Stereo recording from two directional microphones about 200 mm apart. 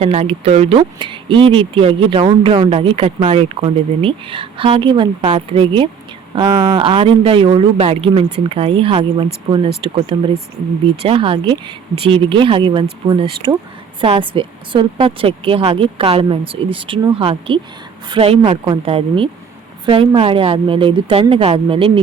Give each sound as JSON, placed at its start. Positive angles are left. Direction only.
{"t": 0.0, "sound": "speech", "side_deg": -30}